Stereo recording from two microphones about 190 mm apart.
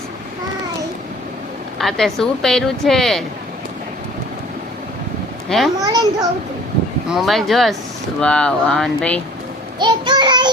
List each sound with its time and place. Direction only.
1.8 s speech: centre (ahead or behind)
5.5 s a child's voice: centre (ahead or behind)
5.8 s child singing: 20° right (ahead or behind)
7.1 s speech: centre (ahead or behind)
9.7 s child singing: 25° right (ahead or behind)